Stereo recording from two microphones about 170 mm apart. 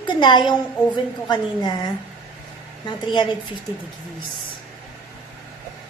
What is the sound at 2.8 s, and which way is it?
Speech, 25° left (ahead or behind).